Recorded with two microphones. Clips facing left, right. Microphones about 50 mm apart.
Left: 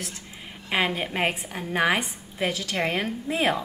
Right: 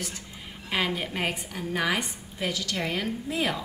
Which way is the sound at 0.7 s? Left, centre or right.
Left.